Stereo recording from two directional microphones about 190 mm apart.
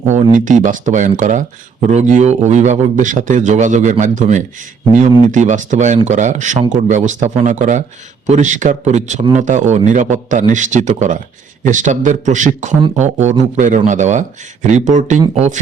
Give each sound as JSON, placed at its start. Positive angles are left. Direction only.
{"t": 0.0, "sound": "a man's voice", "side_deg": -40}